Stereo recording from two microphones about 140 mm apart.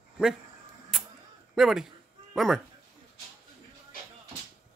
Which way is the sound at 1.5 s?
Centre (ahead or behind).